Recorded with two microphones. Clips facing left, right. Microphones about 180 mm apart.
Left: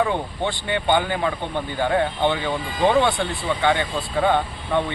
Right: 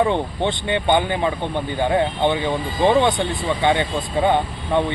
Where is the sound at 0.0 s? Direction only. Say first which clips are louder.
Right 3 dB; 25° right (ahead or behind).